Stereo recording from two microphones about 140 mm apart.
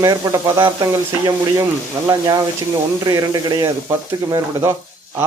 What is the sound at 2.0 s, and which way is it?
A man's voice, 25° right (ahead or behind).